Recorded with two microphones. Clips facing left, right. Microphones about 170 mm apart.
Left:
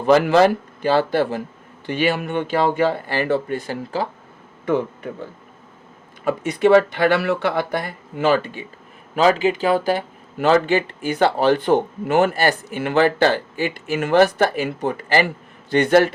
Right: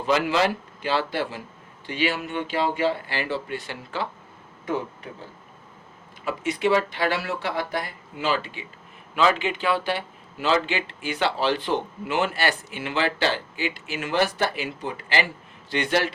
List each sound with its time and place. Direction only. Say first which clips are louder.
0.0 s speech: left 8 dB; 50° left (ahead or behind)
6.2 s speech: left 7 dB; 50° left (ahead or behind)